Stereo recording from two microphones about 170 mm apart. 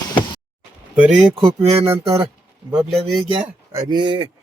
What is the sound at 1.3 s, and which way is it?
Speech, 35° right (ahead or behind).